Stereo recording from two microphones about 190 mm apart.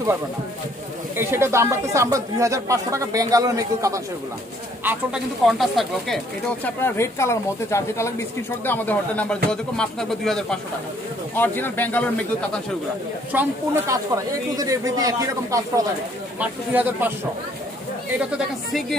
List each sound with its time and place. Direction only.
1.1 s speech: 15° right (ahead or behind)
4.8 s speech: centre (ahead or behind)
6.8 s speech: 15° left (ahead or behind)
13.3 s speech: 15° right (ahead or behind)
18.7 s speech: centre (ahead or behind)